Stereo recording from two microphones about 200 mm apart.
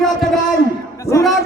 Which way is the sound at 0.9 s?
15° left (ahead or behind).